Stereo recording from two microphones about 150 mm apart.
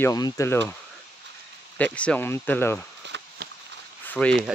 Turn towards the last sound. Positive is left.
turn(degrees=10)  # may be behind; listen again after turning